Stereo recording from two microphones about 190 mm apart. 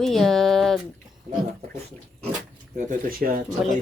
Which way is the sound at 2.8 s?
45° right (ahead or behind).